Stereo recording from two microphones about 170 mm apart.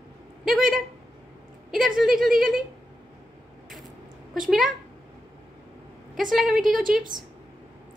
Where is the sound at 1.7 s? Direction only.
Centre (ahead or behind).